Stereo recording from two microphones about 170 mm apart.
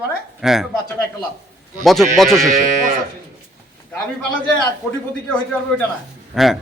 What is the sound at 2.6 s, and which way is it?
Music, 50° right (ahead or behind).